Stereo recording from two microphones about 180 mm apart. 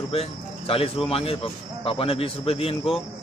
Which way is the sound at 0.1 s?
30° left (ahead or behind).